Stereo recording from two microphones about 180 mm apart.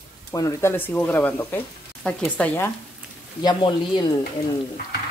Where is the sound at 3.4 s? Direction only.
25° left (ahead or behind).